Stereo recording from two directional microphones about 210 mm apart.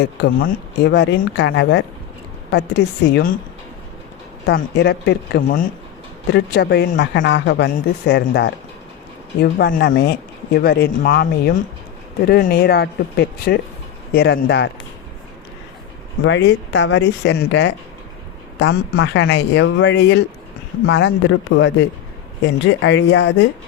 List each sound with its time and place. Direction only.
0.0 s speech: 50° left (ahead or behind)
4.4 s speech: 50° left (ahead or behind)
16.2 s speech: 60° left (ahead or behind)